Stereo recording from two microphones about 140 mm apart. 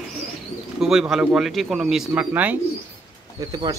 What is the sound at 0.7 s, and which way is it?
Speech, centre (ahead or behind).